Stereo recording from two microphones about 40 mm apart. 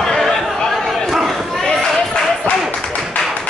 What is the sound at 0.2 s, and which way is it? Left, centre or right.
Chatter, centre.